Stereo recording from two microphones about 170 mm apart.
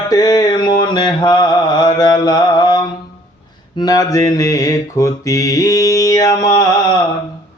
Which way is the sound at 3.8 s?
20° left (ahead or behind).